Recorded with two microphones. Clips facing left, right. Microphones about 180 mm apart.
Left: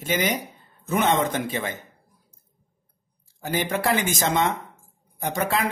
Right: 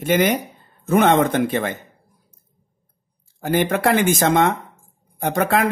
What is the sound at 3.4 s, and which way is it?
Speech, 55° right (ahead or behind).